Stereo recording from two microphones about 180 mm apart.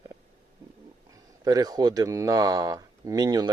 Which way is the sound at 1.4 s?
20° right (ahead or behind).